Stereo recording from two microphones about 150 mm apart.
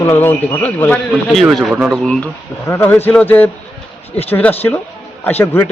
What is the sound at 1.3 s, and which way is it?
Speech, centre (ahead or behind).